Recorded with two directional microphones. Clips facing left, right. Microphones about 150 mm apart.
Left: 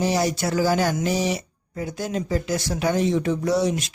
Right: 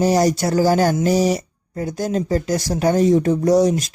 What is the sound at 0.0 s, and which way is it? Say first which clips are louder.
A man's voice: right 6 dB; 40° right (ahead or behind).